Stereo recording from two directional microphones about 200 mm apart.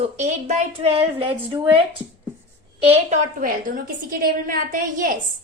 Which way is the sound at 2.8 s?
30° right (ahead or behind).